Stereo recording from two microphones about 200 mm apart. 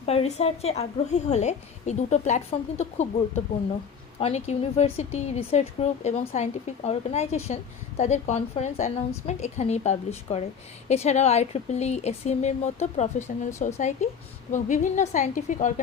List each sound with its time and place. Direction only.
0.0 s a woman's voice: 30° left (ahead or behind)